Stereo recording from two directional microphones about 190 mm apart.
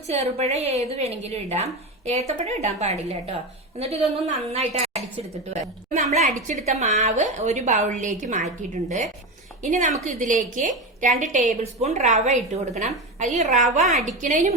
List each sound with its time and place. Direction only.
0.1 s a woman's voice: 35° right (ahead or behind)